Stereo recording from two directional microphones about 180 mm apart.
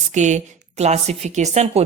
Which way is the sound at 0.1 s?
40° right (ahead or behind).